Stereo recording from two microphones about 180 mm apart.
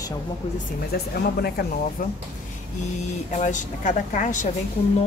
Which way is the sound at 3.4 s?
45° left (ahead or behind).